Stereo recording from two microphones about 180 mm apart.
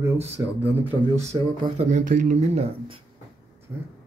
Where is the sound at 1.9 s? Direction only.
45° right (ahead or behind).